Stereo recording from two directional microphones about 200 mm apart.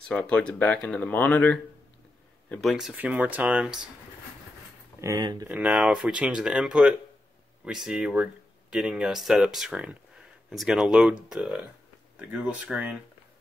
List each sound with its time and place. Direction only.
0.1 s speech: 5° left (ahead or behind)
5.0 s speech: 15° right (ahead or behind)
5.5 s speech: 5° right (ahead or behind)